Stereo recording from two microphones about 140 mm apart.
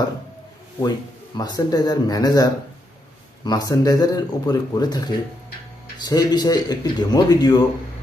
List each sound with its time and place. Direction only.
0.7 s speech: 30° left (ahead or behind)